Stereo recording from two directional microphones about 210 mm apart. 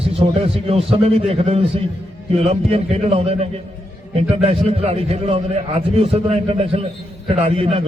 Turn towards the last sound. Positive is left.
turn(degrees=-30)  # may be behind; listen again after turning